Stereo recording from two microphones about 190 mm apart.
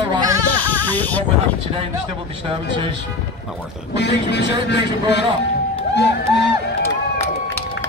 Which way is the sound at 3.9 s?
65° left (ahead or behind).